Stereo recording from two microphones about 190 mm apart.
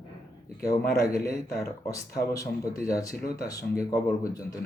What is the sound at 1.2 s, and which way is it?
Speech, 15° left (ahead or behind).